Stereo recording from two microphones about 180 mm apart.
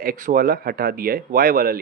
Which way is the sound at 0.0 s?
50° right (ahead or behind).